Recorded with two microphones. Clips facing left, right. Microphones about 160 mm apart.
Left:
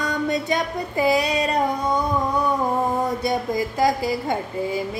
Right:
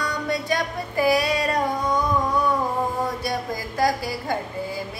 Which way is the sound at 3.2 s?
25° left (ahead or behind).